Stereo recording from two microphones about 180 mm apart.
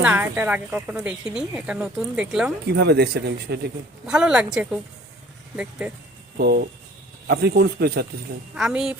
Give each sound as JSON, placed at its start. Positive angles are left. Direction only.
{"t": 0.0, "sound": "speech", "side_deg": -10}
{"t": 2.6, "sound": "speech", "side_deg": -65}
{"t": 4.0, "sound": "speech", "side_deg": -5}
{"t": 5.8, "sound": "speech", "side_deg": -5}
{"t": 6.3, "sound": "speech", "side_deg": -60}
{"t": 8.5, "sound": "speech", "side_deg": 0}